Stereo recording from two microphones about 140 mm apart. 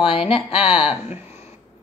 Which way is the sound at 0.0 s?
40° left (ahead or behind).